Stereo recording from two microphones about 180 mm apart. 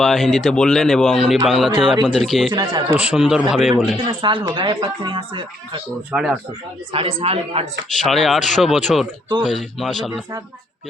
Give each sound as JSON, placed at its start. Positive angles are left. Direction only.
{"t": 0.0, "sound": "speech", "side_deg": 0}
{"t": 2.5, "sound": "speech", "side_deg": -25}
{"t": 2.9, "sound": "speech", "side_deg": -5}
{"t": 3.9, "sound": "speech", "side_deg": -25}
{"t": 6.1, "sound": "speech", "side_deg": -5}
{"t": 6.9, "sound": "a man's voice", "side_deg": -30}
{"t": 7.9, "sound": "speech", "side_deg": 0}